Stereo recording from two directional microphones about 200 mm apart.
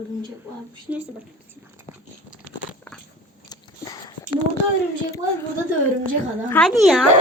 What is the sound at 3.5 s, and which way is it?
Biting, 20° left (ahead or behind).